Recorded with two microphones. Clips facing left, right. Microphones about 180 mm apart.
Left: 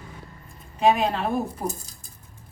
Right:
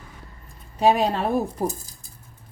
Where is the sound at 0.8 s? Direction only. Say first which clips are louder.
Right 1 dB; 35° right (ahead or behind).